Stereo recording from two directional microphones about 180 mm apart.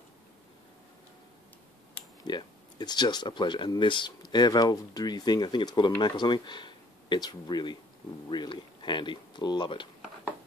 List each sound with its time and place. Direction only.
2.2 s speech: 25° left (ahead or behind)